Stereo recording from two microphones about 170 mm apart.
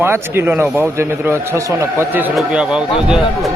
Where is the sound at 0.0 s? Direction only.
15° right (ahead or behind).